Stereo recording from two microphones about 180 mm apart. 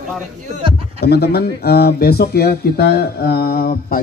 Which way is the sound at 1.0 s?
60° left (ahead or behind).